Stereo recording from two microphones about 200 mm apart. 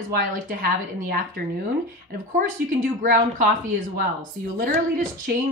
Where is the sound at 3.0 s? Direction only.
45° right (ahead or behind).